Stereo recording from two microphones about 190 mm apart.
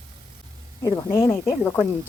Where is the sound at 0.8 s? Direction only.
15° left (ahead or behind).